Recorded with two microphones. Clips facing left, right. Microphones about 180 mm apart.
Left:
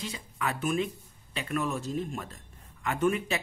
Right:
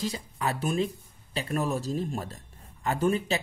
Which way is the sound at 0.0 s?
35° right (ahead or behind).